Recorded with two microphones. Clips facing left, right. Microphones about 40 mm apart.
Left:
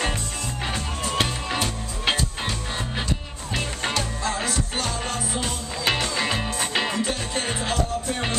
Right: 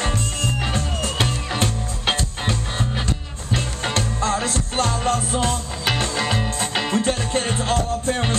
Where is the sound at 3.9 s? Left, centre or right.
Right.